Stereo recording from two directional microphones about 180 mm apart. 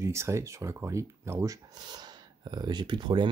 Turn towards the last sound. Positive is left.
turn(degrees=-25)  # may be behind; listen again after turning